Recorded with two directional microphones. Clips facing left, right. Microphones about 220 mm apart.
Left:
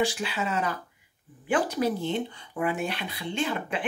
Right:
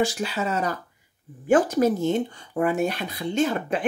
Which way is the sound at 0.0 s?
40° right (ahead or behind).